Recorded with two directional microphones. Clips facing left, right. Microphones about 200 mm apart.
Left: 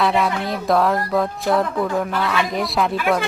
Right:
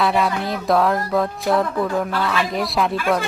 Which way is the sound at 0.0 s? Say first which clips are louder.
Even; centre (ahead or behind).